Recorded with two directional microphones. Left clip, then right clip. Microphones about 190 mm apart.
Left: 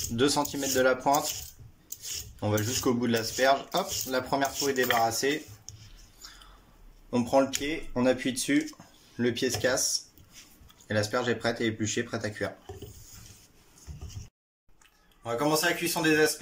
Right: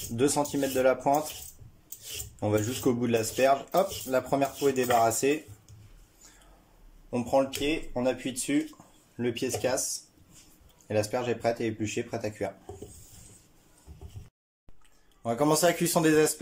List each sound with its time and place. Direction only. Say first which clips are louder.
0.1 s speech: even; 10° right (ahead or behind)
2.4 s speech: right 1 dB; 15° right (ahead or behind)
7.1 s speech: left 1 dB; 5° right (ahead or behind)
10.9 s speech: even; 10° right (ahead or behind)
15.2 s speech: right 2 dB; 35° right (ahead or behind)